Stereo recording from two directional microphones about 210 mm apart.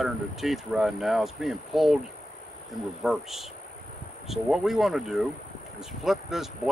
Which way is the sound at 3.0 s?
Centre (ahead or behind).